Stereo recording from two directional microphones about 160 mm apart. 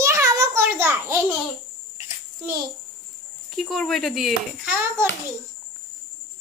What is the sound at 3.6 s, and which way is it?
Speech, centre (ahead or behind).